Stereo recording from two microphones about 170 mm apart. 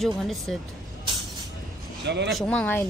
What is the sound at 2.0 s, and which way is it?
Speech, 90° right.